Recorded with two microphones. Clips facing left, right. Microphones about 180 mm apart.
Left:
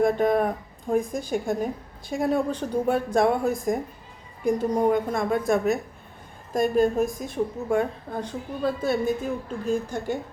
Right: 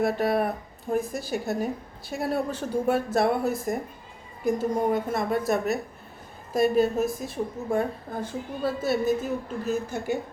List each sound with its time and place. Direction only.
0.0 s a woman's voice: 5° right (ahead or behind)